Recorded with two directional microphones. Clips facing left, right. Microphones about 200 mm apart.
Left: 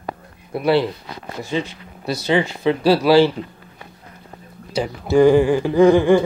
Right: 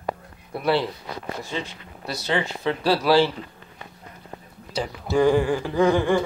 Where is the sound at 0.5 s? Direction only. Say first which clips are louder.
Left 5 dB; 10° left (ahead or behind).